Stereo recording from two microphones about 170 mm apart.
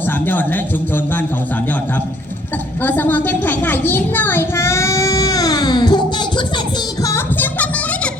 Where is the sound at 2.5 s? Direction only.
10° left (ahead or behind).